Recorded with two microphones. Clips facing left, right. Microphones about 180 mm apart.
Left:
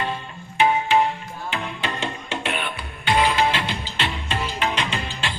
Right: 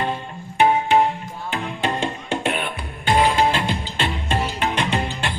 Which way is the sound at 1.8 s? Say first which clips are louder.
Right 5 dB; 45° right (ahead or behind).